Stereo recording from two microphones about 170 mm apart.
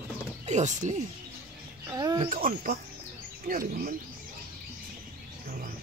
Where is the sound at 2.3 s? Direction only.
55° right (ahead or behind).